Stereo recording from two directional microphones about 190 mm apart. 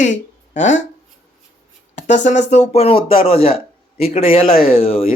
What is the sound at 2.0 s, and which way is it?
Speech, 40° left (ahead or behind).